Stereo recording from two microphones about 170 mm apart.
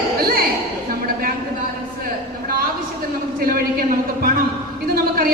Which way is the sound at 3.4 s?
60° right (ahead or behind).